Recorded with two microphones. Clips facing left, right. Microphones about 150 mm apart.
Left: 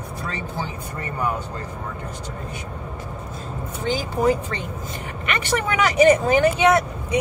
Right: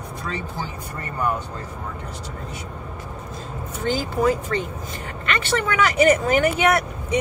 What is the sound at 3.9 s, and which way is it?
Speech, 15° left (ahead or behind).